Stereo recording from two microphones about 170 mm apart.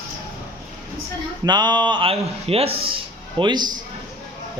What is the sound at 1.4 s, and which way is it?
A man's voice, 25° right (ahead or behind).